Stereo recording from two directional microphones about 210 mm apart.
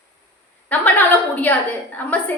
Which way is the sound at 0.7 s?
5° left (ahead or behind).